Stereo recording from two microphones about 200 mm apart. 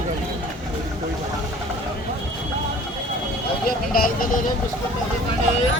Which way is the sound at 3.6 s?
45° left (ahead or behind).